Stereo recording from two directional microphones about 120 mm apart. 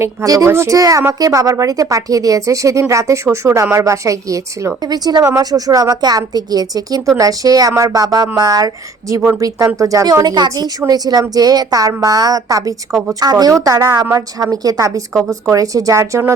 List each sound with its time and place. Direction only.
0.0 s a woman's voice: 25° right (ahead or behind)